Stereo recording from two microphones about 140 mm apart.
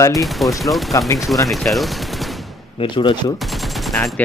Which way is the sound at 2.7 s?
35° left (ahead or behind).